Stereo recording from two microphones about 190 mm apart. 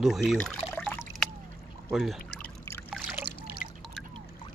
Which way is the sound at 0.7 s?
10° left (ahead or behind).